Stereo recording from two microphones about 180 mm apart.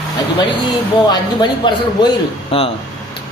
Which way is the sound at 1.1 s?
25° left (ahead or behind).